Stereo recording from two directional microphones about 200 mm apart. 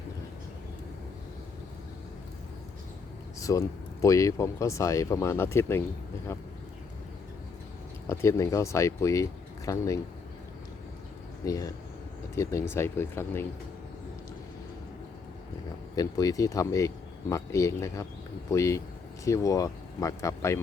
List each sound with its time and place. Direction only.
3.5 s speech: 15° left (ahead or behind)
8.0 s speech: 15° left (ahead or behind)
11.4 s speech: 15° left (ahead or behind)
16.0 s speech: 15° left (ahead or behind)